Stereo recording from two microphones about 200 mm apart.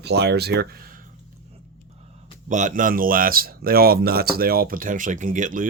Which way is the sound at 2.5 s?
40° right (ahead or behind).